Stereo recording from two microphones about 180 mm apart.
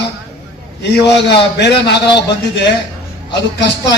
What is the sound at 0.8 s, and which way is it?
A man's voice, 70° left (ahead or behind).